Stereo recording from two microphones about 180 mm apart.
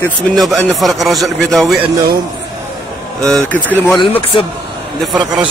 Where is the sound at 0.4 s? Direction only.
Centre (ahead or behind).